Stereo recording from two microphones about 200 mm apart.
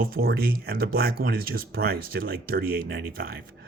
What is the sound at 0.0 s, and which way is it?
Speech, 50° right (ahead or behind).